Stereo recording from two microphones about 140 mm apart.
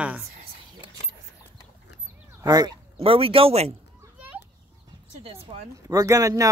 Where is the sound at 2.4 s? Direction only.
25° right (ahead or behind).